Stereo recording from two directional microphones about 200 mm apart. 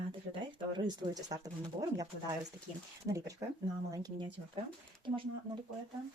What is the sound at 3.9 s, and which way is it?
A woman's voice, 20° right (ahead or behind).